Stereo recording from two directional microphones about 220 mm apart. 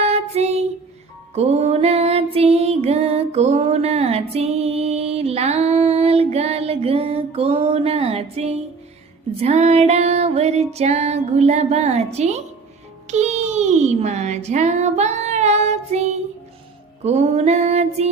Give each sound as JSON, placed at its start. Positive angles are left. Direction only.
{"t": 0.0, "sound": "child singing", "side_deg": -30}
{"t": 1.4, "sound": "music", "side_deg": -30}
{"t": 13.1, "sound": "speech", "side_deg": -30}
{"t": 17.0, "sound": "music", "side_deg": -30}